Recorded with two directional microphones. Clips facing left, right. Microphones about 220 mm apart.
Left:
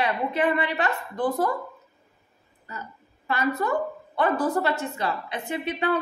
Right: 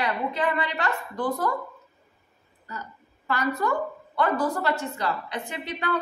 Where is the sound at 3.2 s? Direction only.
20° left (ahead or behind).